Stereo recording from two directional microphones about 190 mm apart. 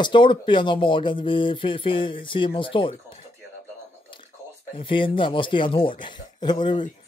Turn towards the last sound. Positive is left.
turn(degrees=25)  # may be behind; listen again after turning